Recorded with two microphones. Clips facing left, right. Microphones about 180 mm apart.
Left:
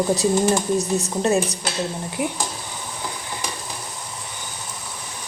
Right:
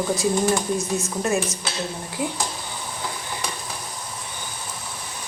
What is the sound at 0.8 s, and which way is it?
Speech, 40° left (ahead or behind).